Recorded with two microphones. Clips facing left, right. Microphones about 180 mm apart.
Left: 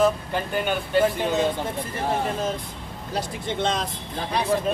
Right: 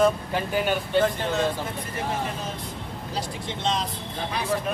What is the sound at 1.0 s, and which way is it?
Speech, 10° left (ahead or behind).